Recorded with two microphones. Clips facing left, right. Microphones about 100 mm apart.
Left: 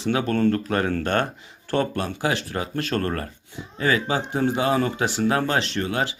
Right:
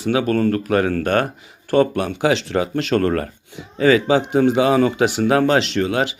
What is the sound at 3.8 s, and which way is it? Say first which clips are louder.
Speech: right 8 dB; 90° right.